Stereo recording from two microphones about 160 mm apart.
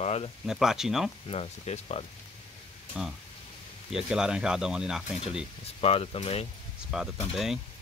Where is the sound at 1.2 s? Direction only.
40° left (ahead or behind).